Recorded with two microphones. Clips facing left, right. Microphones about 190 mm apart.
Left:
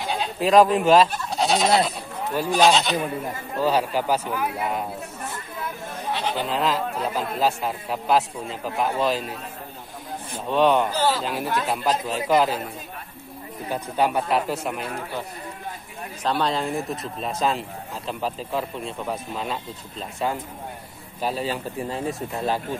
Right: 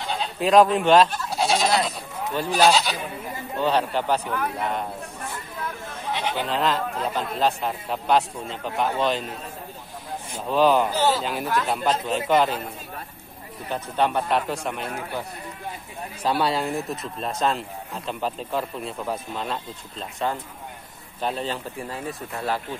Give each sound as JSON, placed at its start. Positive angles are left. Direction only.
{"t": 0.1, "sound": "goat", "side_deg": 5}
{"t": 2.5, "sound": "a man's voice", "side_deg": -5}
{"t": 6.4, "sound": "a man's voice", "side_deg": 0}
{"t": 10.5, "sound": "a man's voice", "side_deg": 0}
{"t": 13.7, "sound": "speech", "side_deg": 10}
{"t": 16.2, "sound": "a man's voice", "side_deg": -10}
{"t": 21.8, "sound": "speech", "side_deg": 20}